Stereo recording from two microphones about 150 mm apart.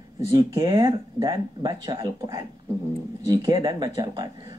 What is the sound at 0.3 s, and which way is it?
Speech, 25° right (ahead or behind).